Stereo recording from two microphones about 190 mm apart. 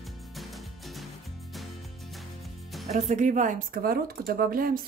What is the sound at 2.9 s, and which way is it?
Speech, 40° right (ahead or behind).